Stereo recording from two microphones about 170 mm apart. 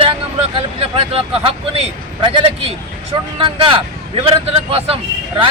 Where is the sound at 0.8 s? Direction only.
35° right (ahead or behind).